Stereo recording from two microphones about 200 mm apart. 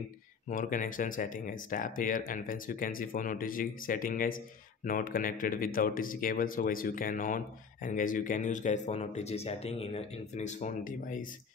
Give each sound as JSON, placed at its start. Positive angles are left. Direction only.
{"t": 0.5, "sound": "speech", "side_deg": 40}